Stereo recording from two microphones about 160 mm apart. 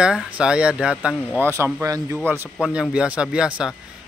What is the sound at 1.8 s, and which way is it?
Speech, 20° right (ahead or behind).